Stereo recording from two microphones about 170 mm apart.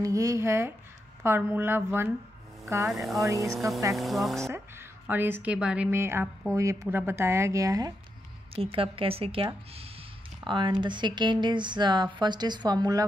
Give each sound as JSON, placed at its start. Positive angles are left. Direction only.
{"t": 0.0, "sound": "speech", "side_deg": -20}
{"t": 3.9, "sound": "speech", "side_deg": 0}
{"t": 4.6, "sound": "a woman's voice", "side_deg": -15}
{"t": 8.5, "sound": "a woman's voice", "side_deg": -30}
{"t": 10.5, "sound": "speech", "side_deg": -30}